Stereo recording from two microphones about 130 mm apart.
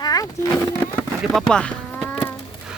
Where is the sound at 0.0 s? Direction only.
30° left (ahead or behind).